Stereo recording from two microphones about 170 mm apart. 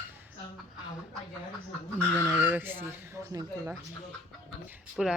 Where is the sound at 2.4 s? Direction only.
10° right (ahead or behind).